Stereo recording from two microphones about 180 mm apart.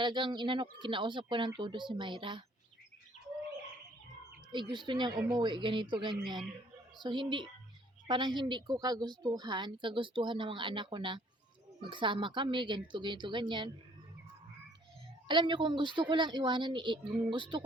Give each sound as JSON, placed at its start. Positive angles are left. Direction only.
{"t": 0.0, "sound": "a woman's voice", "side_deg": -25}
{"t": 4.5, "sound": "a woman's voice", "side_deg": -25}
{"t": 15.3, "sound": "a woman's voice", "side_deg": -25}